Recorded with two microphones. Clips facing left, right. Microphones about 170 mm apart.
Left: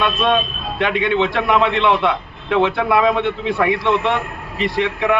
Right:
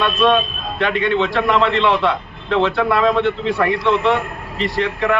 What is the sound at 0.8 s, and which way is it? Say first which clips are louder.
A man's voice: even; 15° left (ahead or behind).